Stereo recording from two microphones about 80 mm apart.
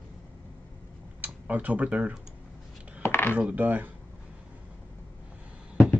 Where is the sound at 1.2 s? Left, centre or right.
Centre.